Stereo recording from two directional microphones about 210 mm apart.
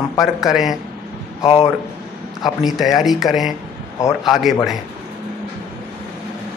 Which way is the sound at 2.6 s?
Centre (ahead or behind).